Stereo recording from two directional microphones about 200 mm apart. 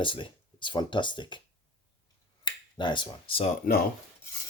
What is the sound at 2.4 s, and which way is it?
Speech, 25° left (ahead or behind).